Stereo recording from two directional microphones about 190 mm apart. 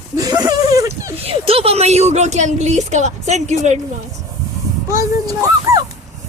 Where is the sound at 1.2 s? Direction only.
30° right (ahead or behind).